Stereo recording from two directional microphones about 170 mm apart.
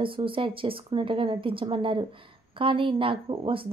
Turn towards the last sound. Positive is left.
turn(degrees=-30)  # may be behind; listen again after turning